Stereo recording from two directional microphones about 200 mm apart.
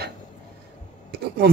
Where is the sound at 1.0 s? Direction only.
50° right (ahead or behind).